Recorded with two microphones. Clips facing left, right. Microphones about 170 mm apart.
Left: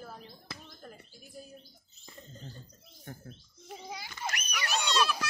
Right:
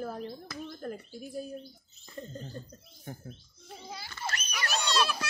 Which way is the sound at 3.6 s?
15° left (ahead or behind).